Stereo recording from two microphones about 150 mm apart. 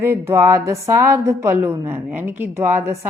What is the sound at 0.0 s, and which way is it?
A woman's voice, 15° right (ahead or behind).